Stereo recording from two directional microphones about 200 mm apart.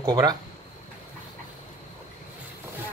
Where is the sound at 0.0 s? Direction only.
20° right (ahead or behind).